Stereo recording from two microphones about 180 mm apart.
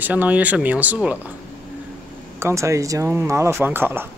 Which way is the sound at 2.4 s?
15° right (ahead or behind).